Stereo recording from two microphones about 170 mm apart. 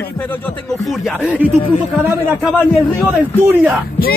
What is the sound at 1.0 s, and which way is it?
Speech, 5° right (ahead or behind).